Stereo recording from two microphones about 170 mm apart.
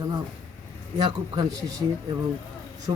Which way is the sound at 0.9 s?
25° right (ahead or behind).